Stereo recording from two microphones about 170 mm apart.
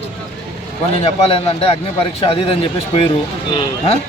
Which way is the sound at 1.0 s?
35° left (ahead or behind).